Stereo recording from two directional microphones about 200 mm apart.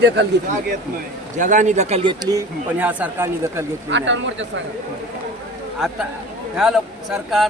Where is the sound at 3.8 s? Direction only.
65° right (ahead or behind).